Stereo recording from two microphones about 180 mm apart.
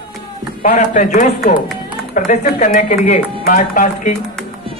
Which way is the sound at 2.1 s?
45° left (ahead or behind).